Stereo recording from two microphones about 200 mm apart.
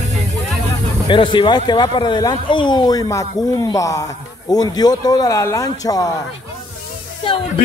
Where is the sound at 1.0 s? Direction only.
25° left (ahead or behind).